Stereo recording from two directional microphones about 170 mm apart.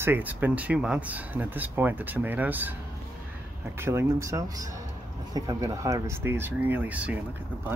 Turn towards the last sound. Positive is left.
turn(degrees=-10)  # may be behind; listen again after turning